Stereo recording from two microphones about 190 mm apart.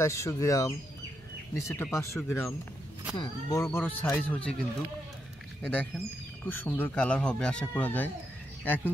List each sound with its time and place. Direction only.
0.0 s speech: 15° left (ahead or behind)
3.6 s speech: 5° left (ahead or behind)